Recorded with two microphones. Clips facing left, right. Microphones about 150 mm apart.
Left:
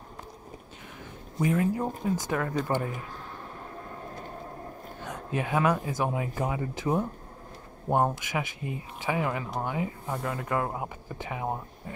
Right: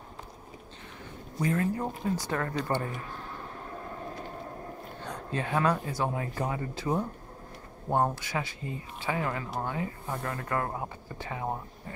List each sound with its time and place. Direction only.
1.4 s speech: 15° left (ahead or behind)
5.0 s a sound: 15° left (ahead or behind)
5.5 s speech: 15° left (ahead or behind)